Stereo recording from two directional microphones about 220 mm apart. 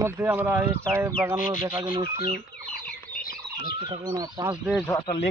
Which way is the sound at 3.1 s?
40° left (ahead or behind).